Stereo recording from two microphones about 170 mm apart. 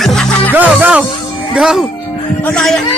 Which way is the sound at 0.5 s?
10° right (ahead or behind).